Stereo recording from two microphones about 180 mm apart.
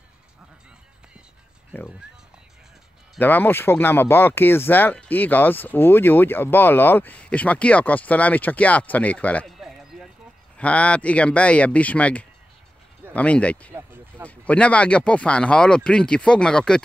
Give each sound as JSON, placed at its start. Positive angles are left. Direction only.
{"t": 3.2, "sound": "speech", "side_deg": 10}
{"t": 13.7, "sound": "a sound", "side_deg": -10}
{"t": 14.2, "sound": "speech", "side_deg": 5}